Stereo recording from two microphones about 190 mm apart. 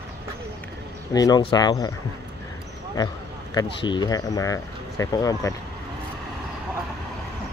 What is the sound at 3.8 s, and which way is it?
Speech, 20° left (ahead or behind).